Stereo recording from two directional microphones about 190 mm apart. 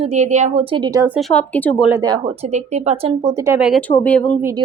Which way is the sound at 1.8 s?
10° right (ahead or behind).